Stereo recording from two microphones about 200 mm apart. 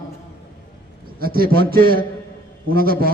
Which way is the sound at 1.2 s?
50° right (ahead or behind).